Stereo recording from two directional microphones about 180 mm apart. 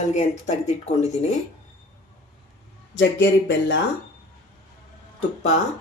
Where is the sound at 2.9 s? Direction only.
85° left.